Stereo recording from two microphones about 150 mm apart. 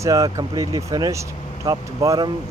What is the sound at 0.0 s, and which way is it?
Speech, 25° right (ahead or behind).